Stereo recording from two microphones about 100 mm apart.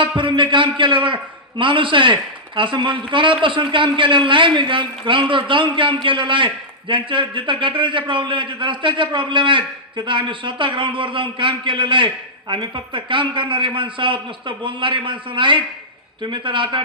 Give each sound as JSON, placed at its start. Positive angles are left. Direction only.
{"t": 0.2, "sound": "a man's voice", "side_deg": -55}